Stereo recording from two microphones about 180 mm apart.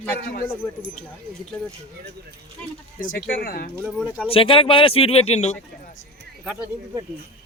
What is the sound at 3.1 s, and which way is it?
Speech, 55° left (ahead or behind).